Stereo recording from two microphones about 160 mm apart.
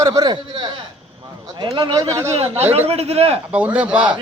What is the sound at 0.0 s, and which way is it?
A man's voice, 20° right (ahead or behind).